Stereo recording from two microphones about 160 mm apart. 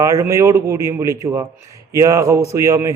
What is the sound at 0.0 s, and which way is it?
A man's voice, 20° right (ahead or behind).